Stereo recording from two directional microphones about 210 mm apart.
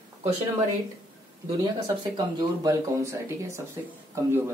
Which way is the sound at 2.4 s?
15° right (ahead or behind).